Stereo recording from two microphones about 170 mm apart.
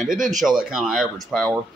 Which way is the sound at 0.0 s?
Centre (ahead or behind).